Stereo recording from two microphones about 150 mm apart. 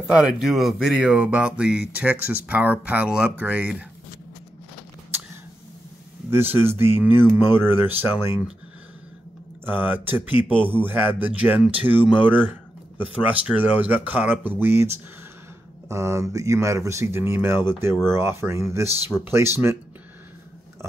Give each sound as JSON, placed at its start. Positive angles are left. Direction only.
{"t": 0.0, "sound": "speech", "side_deg": -5}
{"t": 6.3, "sound": "speech", "side_deg": -15}
{"t": 9.7, "sound": "speech", "side_deg": -15}